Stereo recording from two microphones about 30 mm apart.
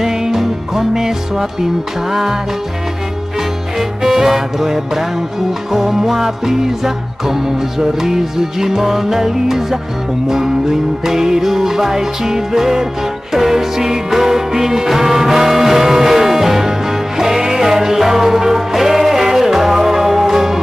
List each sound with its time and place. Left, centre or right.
0.0 s music: centre
4.0 s music: centre